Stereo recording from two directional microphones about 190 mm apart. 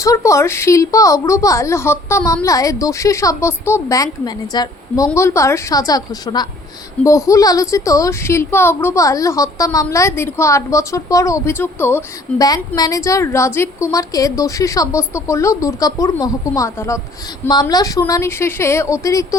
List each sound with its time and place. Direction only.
0.0 s a woman's voice: 15° left (ahead or behind)